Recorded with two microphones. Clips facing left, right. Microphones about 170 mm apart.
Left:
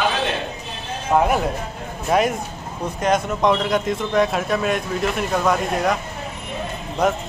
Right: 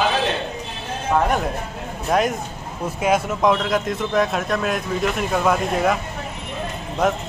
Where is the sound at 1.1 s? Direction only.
5° left (ahead or behind).